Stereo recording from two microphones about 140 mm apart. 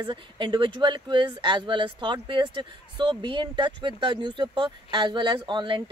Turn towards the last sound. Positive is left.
turn(degrees=-35)  # may be behind; listen again after turning